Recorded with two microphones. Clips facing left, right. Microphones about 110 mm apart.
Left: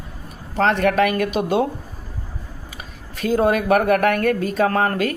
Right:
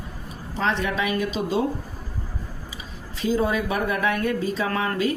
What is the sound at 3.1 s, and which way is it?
Speech, 55° left (ahead or behind).